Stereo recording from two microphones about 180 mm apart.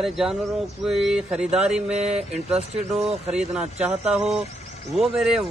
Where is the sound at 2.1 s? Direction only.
35° right (ahead or behind).